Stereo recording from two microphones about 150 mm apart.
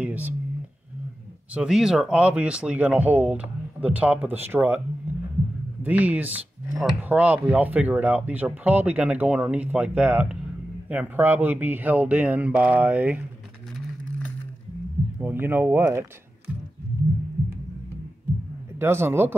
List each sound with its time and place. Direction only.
0.0 s whispering: 10° right (ahead or behind)
1.5 s speech: 5° right (ahead or behind)
5.9 s speech: 10° right (ahead or behind)
15.1 s speech: 15° right (ahead or behind)
18.8 s speech: 15° right (ahead or behind)